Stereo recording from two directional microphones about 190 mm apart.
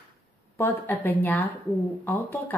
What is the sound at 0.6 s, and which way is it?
Speech, 10° left (ahead or behind).